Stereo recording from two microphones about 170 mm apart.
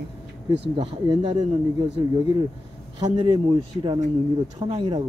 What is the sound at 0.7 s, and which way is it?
Speech, 30° right (ahead or behind).